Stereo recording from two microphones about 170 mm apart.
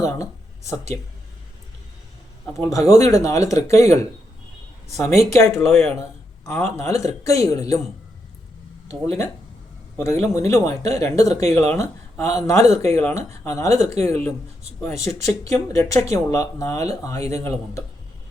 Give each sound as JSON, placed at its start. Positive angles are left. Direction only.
{"t": 0.0, "sound": "speech", "side_deg": 20}
{"t": 2.5, "sound": "a man's voice", "side_deg": 20}
{"t": 8.9, "sound": "a man's voice", "side_deg": 15}